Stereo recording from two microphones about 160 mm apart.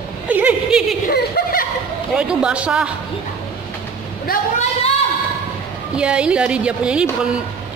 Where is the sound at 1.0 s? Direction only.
70° left (ahead or behind).